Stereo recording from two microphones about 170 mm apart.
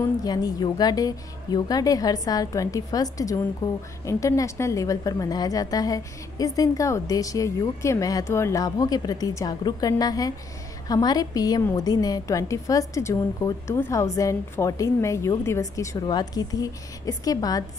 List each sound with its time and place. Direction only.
0.0 s a woman's voice: 25° left (ahead or behind)